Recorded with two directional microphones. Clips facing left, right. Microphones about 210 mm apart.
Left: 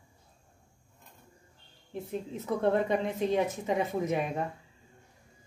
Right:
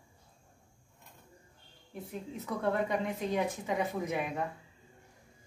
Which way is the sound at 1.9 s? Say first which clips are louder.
Left 5 dB; 25° left (ahead or behind).